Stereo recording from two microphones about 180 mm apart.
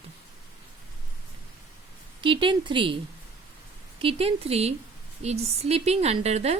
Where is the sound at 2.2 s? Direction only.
30° right (ahead or behind).